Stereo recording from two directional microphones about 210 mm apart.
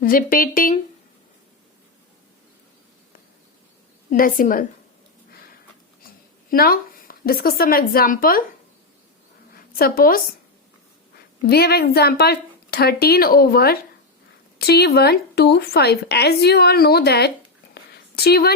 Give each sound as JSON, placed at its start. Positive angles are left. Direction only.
{"t": 0.0, "sound": "a woman's voice", "side_deg": 40}
{"t": 4.1, "sound": "a woman's voice", "side_deg": 40}
{"t": 6.5, "sound": "speech", "side_deg": 45}
{"t": 9.6, "sound": "a woman's voice", "side_deg": 45}
{"t": 11.4, "sound": "a woman's voice", "side_deg": 50}